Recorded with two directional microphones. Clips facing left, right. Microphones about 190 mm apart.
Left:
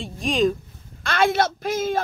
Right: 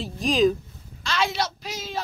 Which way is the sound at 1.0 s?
55° left (ahead or behind).